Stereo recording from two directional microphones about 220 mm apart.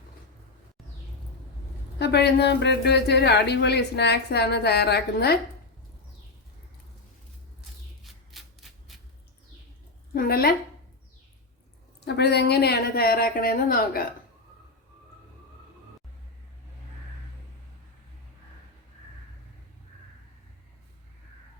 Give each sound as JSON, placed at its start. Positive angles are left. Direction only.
{"t": 2.0, "sound": "speech", "side_deg": 50}
{"t": 8.0, "sound": "a sound", "side_deg": 0}
{"t": 10.2, "sound": "speech", "side_deg": 45}
{"t": 12.0, "sound": "speech", "side_deg": 50}